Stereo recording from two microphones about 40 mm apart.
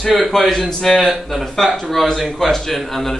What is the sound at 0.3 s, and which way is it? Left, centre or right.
Speech, centre.